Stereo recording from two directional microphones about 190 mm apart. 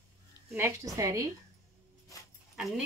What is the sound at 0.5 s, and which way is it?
Speech, 15° right (ahead or behind).